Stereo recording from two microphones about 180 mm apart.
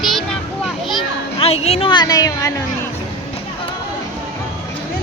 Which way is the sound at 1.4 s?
35° left (ahead or behind).